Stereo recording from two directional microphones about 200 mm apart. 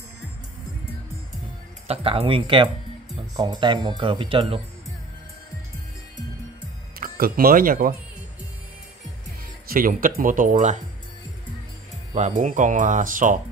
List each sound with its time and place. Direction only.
1.9 s speech: 30° right (ahead or behind)
7.0 s speech: 45° right (ahead or behind)
9.7 s speech: 45° right (ahead or behind)
12.2 s speech: 40° right (ahead or behind)